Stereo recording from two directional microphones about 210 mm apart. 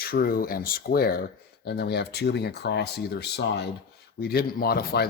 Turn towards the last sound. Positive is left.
turn(degrees=50)  # may be behind; listen again after turning